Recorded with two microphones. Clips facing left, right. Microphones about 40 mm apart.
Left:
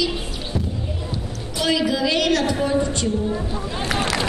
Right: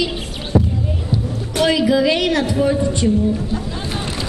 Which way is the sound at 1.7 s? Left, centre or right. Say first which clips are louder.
Right 4 dB; centre.